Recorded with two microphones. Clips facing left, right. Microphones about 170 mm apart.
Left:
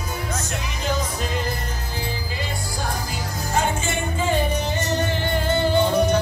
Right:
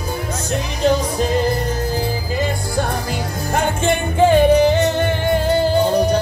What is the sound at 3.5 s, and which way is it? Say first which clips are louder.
Music: right 5 dB; 55° right (ahead or behind).